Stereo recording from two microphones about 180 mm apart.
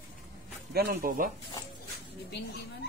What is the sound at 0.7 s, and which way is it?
Speech, 50° right (ahead or behind).